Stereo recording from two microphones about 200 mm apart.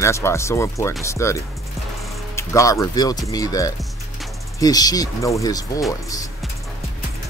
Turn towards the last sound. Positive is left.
turn(degrees=20)  # may be behind; listen again after turning